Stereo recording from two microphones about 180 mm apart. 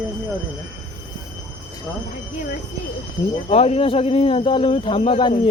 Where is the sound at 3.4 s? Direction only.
35° left (ahead or behind).